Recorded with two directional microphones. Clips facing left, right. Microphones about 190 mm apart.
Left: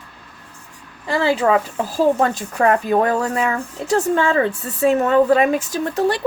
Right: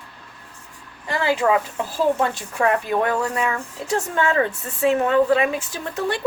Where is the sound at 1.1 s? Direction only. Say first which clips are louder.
Left 3 dB; 35° left (ahead or behind).